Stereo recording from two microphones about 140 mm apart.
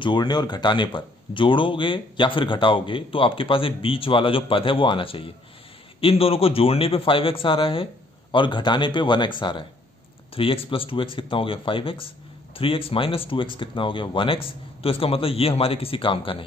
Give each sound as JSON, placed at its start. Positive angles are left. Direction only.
{"t": 0.0, "sound": "speech", "side_deg": 30}